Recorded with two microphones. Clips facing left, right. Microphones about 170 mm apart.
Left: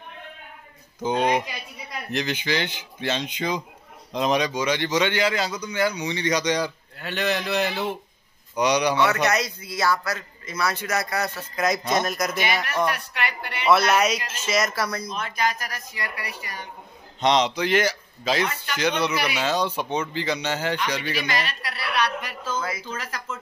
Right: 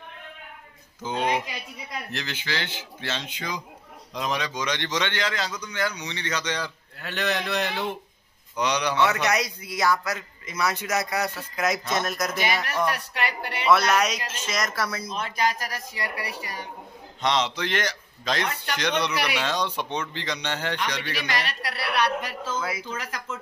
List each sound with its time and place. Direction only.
1.0 s a man's voice: 15° left (ahead or behind)
7.0 s a man's voice: centre (ahead or behind)
9.1 s a man's voice: 15° right (ahead or behind)
12.9 s speech: 40° right (ahead or behind)
13.7 s a man's voice: 5° left (ahead or behind)
15.0 s speech: 30° right (ahead or behind)
17.2 s a man's voice: 20° left (ahead or behind)
21.5 s a sound: 60° right (ahead or behind)
22.2 s a sound: 25° right (ahead or behind)
22.6 s a man's voice: 10° right (ahead or behind)